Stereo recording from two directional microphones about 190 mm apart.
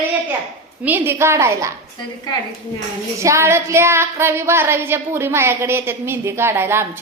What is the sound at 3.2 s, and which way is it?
Child singing, 15° right (ahead or behind).